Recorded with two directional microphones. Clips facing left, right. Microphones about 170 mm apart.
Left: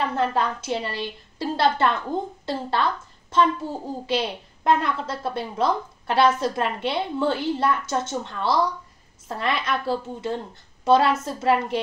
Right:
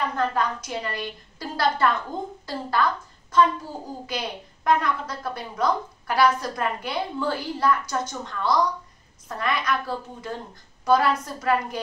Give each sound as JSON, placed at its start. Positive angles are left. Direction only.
{"t": 0.0, "sound": "a woman's voice", "side_deg": 25}